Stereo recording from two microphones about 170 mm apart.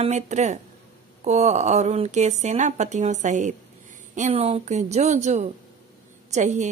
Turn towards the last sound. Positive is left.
turn(degrees=-45)  # may be behind; listen again after turning